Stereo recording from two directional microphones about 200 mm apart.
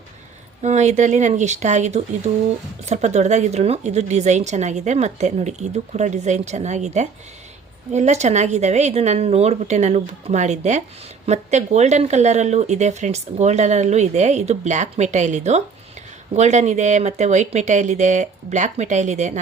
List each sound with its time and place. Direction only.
0.6 s speech: 35° right (ahead or behind)